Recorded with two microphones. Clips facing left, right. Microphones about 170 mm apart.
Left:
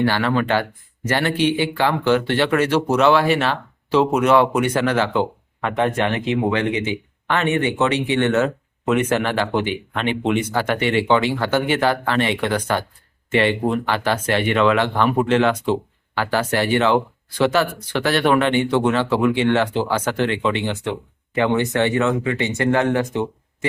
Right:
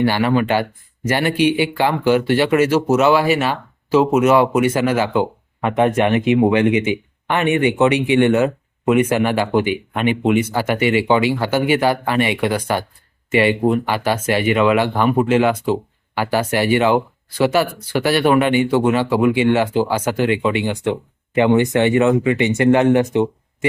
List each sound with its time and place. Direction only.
0.0 s speech: 10° right (ahead or behind)